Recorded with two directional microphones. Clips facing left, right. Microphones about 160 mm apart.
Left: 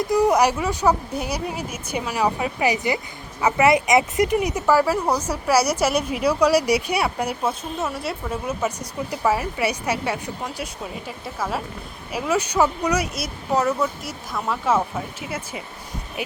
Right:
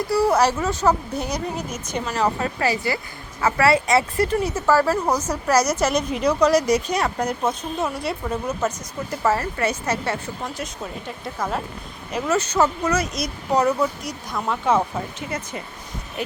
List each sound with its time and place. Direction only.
0.1 s speech: 15° left (ahead or behind)